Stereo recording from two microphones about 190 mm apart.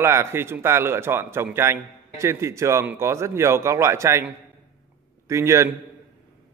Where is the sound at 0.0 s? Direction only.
15° right (ahead or behind).